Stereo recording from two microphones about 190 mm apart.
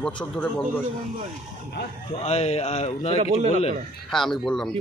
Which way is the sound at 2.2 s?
35° left (ahead or behind).